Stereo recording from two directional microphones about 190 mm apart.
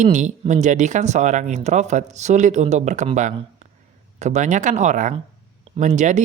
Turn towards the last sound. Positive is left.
turn(degrees=-40)  # may be behind; listen again after turning